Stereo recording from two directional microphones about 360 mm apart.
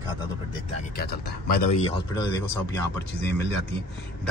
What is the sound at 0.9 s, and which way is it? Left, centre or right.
Speech, left.